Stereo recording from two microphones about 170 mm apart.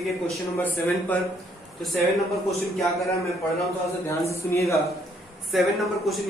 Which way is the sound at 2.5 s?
Centre (ahead or behind).